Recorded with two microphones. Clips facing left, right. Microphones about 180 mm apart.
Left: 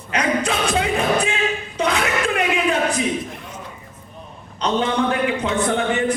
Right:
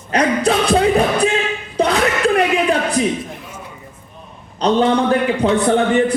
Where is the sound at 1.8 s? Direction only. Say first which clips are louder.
Right 5 dB; 35° right (ahead or behind).